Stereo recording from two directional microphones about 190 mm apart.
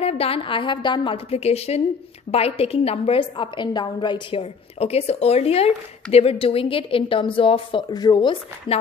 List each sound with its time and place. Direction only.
0.0 s a woman's voice: 30° left (ahead or behind)